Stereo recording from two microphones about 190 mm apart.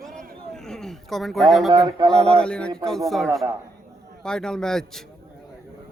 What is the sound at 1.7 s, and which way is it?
Speech, 20° right (ahead or behind).